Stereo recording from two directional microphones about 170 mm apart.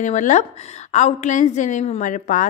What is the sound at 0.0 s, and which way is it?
A woman's voice, 45° left (ahead or behind).